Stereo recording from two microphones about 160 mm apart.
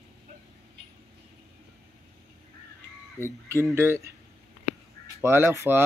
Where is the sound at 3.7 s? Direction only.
15° right (ahead or behind).